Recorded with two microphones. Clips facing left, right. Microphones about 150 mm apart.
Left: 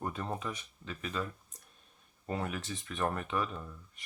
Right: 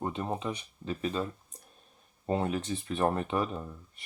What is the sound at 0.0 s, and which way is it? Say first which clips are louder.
Speech: right 4 dB; 20° right (ahead or behind).